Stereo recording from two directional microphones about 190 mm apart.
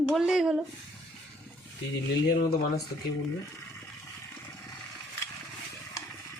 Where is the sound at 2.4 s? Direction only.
55° left (ahead or behind).